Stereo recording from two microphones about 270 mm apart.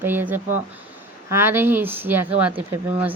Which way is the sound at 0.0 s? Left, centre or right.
Centre.